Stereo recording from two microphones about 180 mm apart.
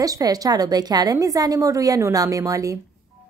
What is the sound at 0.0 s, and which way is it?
A woman's voice, 20° right (ahead or behind).